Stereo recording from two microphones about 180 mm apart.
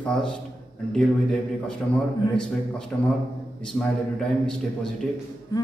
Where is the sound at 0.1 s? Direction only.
5° left (ahead or behind).